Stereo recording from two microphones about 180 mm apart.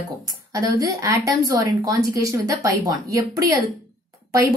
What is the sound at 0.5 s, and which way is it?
A woman's voice, 20° right (ahead or behind).